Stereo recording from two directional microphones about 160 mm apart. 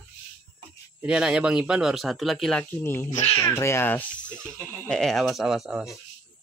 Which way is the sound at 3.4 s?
15° left (ahead or behind).